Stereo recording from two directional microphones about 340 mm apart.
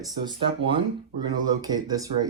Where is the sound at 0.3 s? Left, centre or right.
Centre.